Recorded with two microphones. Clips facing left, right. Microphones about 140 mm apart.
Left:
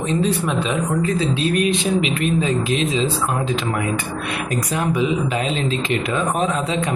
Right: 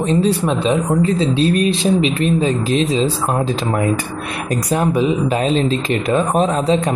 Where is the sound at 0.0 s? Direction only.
35° right (ahead or behind).